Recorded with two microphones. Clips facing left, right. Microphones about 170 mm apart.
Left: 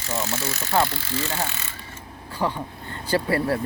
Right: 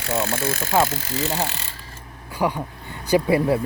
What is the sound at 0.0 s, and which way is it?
Speech, 60° right (ahead or behind).